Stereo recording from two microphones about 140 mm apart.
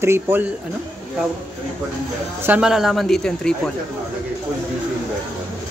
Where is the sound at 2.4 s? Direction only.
10° right (ahead or behind).